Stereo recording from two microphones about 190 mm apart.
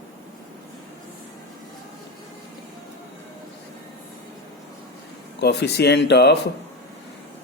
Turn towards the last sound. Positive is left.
turn(degrees=60)  # may be behind; listen again after turning